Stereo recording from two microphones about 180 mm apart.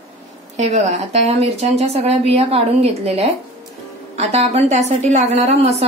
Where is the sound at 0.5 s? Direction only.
40° right (ahead or behind).